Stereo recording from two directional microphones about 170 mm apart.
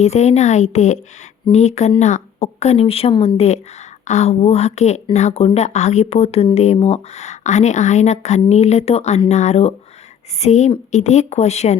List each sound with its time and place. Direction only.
0.0 s speech: 40° left (ahead or behind)